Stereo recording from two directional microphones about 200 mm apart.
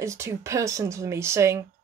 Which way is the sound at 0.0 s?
15° right (ahead or behind).